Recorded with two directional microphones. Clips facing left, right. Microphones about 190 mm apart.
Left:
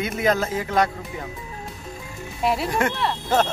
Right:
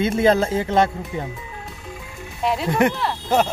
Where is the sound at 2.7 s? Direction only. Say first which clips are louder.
Right 5 dB; 20° right (ahead or behind).